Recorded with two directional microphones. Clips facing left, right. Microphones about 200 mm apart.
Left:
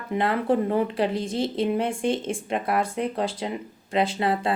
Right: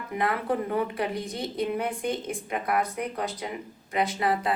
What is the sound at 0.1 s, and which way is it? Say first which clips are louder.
Speech: left 5 dB; 30° left (ahead or behind).